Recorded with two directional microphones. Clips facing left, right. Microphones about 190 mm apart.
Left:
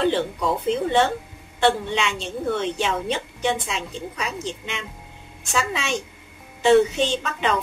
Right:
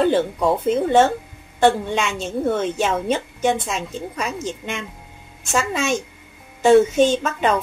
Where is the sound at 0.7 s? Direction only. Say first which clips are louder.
Right 4 dB; 45° right (ahead or behind).